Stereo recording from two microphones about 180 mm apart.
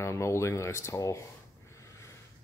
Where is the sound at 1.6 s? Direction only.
15° left (ahead or behind).